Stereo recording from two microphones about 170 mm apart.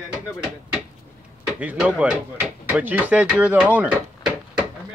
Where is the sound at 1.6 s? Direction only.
5° right (ahead or behind).